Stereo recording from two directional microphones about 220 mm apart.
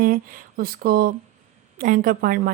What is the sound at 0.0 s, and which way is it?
Mantra, 40° right (ahead or behind).